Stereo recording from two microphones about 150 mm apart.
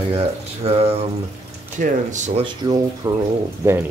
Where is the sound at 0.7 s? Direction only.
40° right (ahead or behind).